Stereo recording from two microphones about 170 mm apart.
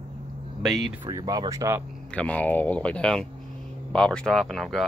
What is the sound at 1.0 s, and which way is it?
Speech, 25° right (ahead or behind).